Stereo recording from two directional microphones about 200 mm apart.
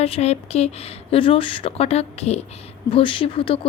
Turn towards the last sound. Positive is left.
turn(degrees=25)  # may be behind; listen again after turning